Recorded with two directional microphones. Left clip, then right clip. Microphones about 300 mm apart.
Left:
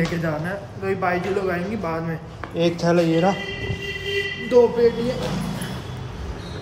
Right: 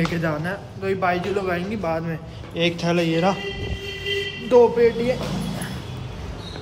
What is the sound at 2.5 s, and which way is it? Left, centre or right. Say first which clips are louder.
Speech: left 2 dB; centre.